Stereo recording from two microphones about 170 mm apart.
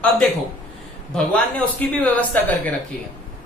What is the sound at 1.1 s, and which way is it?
A woman's voice, 5° left (ahead or behind).